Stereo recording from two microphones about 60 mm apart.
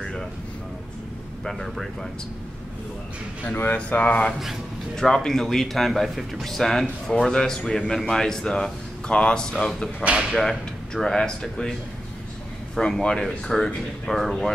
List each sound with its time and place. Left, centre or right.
1.4 s speech: centre
3.7 s speech: centre
4.9 s a man's voice: centre
10.3 s a man's voice: centre
12.7 s a man's voice: centre